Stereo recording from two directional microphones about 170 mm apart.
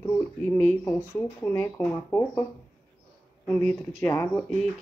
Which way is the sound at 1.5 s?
15° left (ahead or behind).